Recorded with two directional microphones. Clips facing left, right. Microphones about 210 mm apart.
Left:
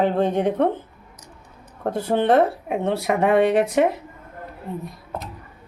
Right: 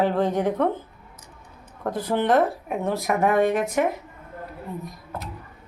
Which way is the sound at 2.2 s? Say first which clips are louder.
Left 3 dB; 30° left (ahead or behind).